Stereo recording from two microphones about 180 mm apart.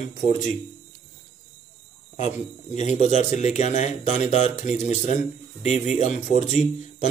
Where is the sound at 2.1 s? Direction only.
40° left (ahead or behind).